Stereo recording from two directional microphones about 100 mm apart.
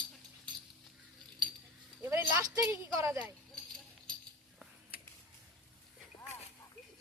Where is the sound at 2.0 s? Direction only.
25° right (ahead or behind).